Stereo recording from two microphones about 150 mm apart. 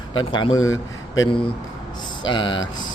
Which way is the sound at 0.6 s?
20° left (ahead or behind).